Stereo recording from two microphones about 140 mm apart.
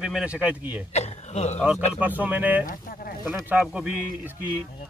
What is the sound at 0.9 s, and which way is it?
Speech, 50° left (ahead or behind).